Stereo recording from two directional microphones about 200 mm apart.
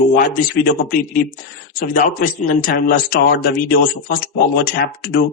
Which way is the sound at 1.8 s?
45° left (ahead or behind).